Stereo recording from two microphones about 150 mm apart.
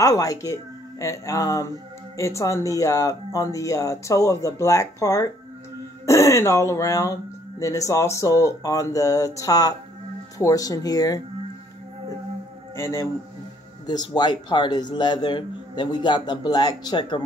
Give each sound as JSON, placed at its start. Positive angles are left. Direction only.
{"t": 0.0, "sound": "speech", "side_deg": 20}
{"t": 12.7, "sound": "speech", "side_deg": 20}